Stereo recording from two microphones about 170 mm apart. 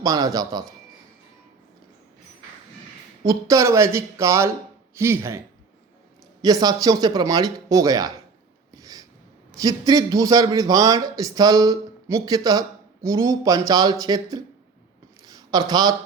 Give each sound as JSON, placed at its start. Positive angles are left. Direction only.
{"t": 0.0, "sound": "a man's voice", "side_deg": -20}
{"t": 3.2, "sound": "speech", "side_deg": -20}
{"t": 6.4, "sound": "a man's voice", "side_deg": -20}
{"t": 8.7, "sound": "a sound", "side_deg": -20}
{"t": 9.5, "sound": "a man's voice", "side_deg": -20}